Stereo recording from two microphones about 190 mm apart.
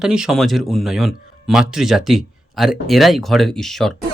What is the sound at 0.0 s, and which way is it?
Speech, 5° right (ahead or behind).